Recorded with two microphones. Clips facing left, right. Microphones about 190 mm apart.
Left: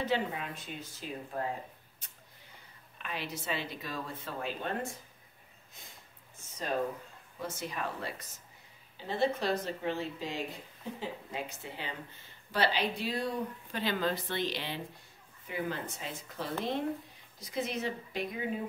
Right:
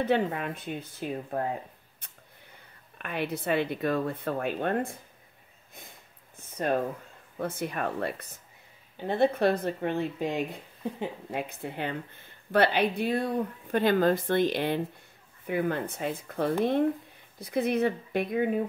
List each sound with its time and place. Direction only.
0.0 s speech: 60° right (ahead or behind)
3.0 s speech: 55° right (ahead or behind)
6.4 s a sound: 55° right (ahead or behind)
7.3 s speech: 55° right (ahead or behind)